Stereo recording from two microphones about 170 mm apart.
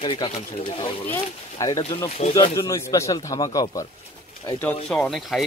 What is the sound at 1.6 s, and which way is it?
Speech, 20° left (ahead or behind).